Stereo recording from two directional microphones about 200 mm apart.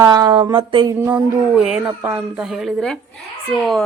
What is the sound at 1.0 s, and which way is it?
A woman's voice, 10° right (ahead or behind).